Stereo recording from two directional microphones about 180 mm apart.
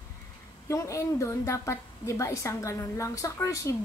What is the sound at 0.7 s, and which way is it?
A woman's voice, 15° left (ahead or behind).